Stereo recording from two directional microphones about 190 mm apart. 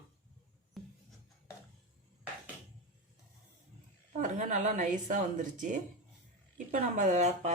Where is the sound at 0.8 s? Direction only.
Centre (ahead or behind).